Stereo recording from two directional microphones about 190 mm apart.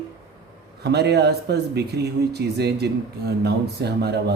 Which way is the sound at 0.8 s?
60° right (ahead or behind).